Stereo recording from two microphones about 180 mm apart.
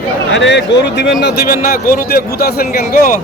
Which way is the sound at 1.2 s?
65° left (ahead or behind).